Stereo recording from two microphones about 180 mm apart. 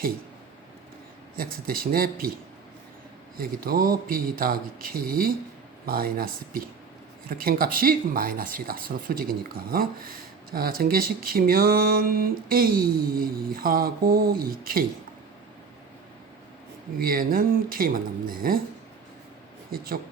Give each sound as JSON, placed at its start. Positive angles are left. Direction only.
{"t": 1.4, "sound": "speech", "side_deg": -55}
{"t": 3.4, "sound": "speech", "side_deg": -55}
{"t": 17.0, "sound": "speech", "side_deg": -55}